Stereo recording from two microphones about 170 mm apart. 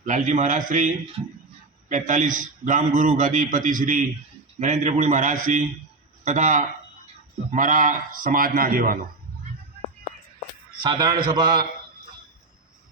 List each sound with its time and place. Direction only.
0.0 s a man's voice: 45° right (ahead or behind)
10.8 s a man's voice: 25° right (ahead or behind)